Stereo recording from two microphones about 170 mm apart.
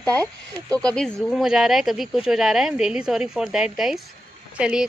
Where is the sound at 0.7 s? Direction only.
5° left (ahead or behind).